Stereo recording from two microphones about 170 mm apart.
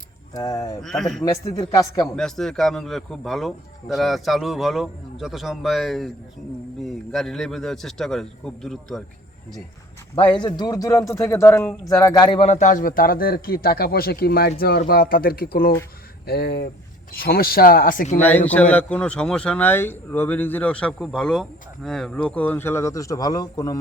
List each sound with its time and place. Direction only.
0.3 s speech: 20° left (ahead or behind)
0.8 s a man's voice: centre (ahead or behind)
1.2 s speech: 20° left (ahead or behind)
2.1 s a man's voice: 5° left (ahead or behind)
10.4 s speech: 25° left (ahead or behind)
12.5 s speech: 45° left (ahead or behind)
18.2 s a man's voice: 10° left (ahead or behind)